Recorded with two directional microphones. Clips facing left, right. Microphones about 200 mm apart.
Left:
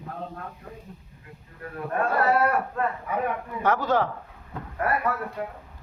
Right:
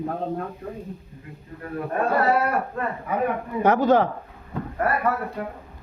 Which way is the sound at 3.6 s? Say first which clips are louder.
Right 5 dB; 20° right (ahead or behind).